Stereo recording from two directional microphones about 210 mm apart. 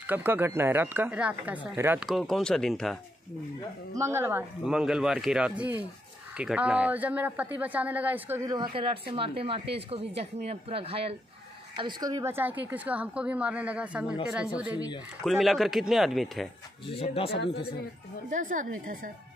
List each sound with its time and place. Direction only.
0.0 s a woman's voice: 10° right (ahead or behind)
3.9 s a woman's voice: 10° right (ahead or behind)
16.8 s speech: 30° left (ahead or behind)
18.3 s speech: 40° right (ahead or behind)